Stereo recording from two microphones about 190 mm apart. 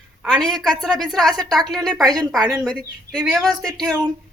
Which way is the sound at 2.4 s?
20° right (ahead or behind).